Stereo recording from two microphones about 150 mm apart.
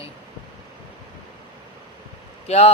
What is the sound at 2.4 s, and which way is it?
Speech, 45° left (ahead or behind).